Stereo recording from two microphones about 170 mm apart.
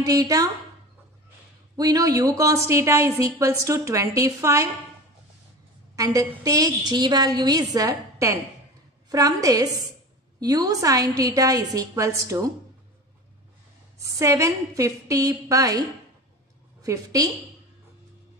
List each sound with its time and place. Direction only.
0.0 s a woman's voice: 20° right (ahead or behind)
1.8 s a woman's voice: 20° right (ahead or behind)
5.9 s a woman's voice: 20° right (ahead or behind)
14.0 s a woman's voice: 20° right (ahead or behind)
16.8 s a woman's voice: 20° right (ahead or behind)